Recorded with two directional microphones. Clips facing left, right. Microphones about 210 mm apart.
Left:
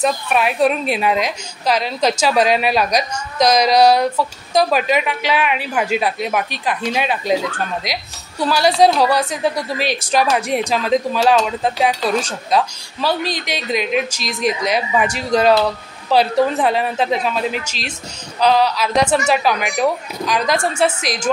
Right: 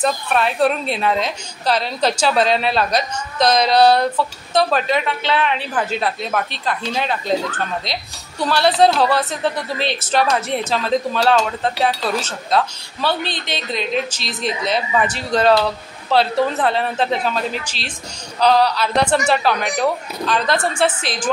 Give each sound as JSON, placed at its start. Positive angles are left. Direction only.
{"t": 0.0, "sound": "a woman's voice", "side_deg": 10}
{"t": 13.7, "sound": "a woman's voice", "side_deg": 10}
{"t": 14.2, "sound": "a woman's voice", "side_deg": -30}
{"t": 14.7, "sound": "a woman's voice", "side_deg": 10}